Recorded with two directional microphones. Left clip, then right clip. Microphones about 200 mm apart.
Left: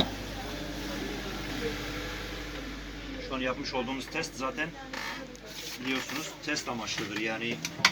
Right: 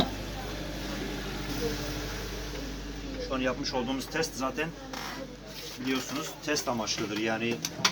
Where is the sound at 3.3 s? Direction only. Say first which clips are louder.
Right 2 dB; 35° right (ahead or behind).